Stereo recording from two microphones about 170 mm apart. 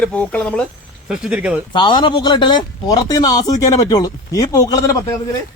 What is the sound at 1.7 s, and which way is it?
A man's voice, 25° left (ahead or behind).